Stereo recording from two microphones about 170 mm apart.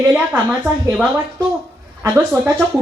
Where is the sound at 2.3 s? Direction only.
15° right (ahead or behind).